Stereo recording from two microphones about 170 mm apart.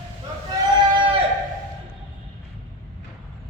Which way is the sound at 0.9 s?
30° right (ahead or behind).